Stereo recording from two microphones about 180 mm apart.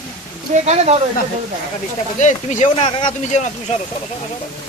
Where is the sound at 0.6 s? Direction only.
35° right (ahead or behind).